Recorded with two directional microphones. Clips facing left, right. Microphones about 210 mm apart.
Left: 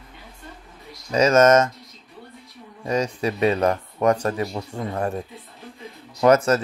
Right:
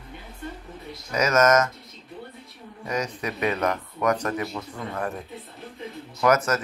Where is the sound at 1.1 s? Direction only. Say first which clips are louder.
Left 5 dB; 30° left (ahead or behind).